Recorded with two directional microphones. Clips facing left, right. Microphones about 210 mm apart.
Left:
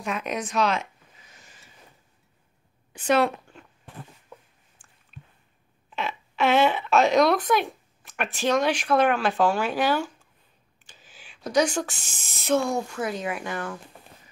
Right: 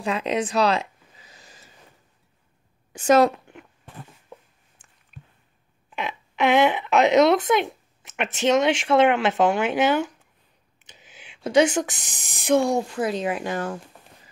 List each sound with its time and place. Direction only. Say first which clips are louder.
0.0 s speech: right 5 dB; 30° right (ahead or behind)
2.9 s a woman's voice: right 5 dB; 45° right (ahead or behind)
5.9 s speech: right 1 dB; 15° right (ahead or behind)
12.6 s speech: right 4 dB; 30° right (ahead or behind)